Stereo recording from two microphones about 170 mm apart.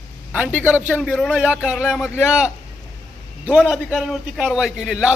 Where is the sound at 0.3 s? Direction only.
10° right (ahead or behind).